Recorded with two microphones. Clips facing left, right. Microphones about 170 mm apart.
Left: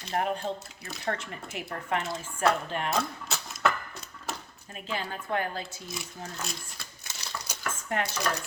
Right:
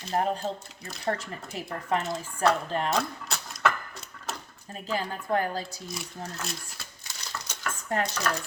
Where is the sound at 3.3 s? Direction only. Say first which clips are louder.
Even; centre (ahead or behind).